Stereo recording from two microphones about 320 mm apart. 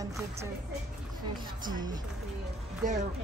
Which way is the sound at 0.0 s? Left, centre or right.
Centre.